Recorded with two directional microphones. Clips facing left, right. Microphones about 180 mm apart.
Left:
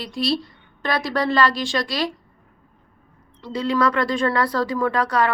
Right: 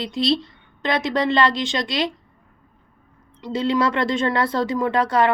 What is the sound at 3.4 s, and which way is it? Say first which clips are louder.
A woman's voice: right 1 dB; 20° right (ahead or behind).